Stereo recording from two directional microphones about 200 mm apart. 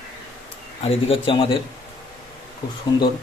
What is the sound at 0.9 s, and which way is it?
Speech, 30° left (ahead or behind).